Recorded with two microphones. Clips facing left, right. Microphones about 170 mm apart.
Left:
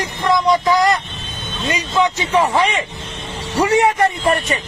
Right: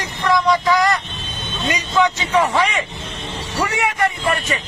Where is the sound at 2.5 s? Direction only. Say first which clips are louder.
Left 2 dB; 30° left (ahead or behind).